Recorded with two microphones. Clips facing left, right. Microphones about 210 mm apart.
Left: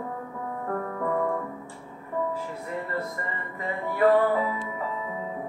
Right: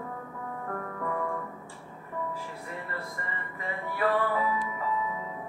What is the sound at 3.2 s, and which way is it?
Music, 40° left (ahead or behind).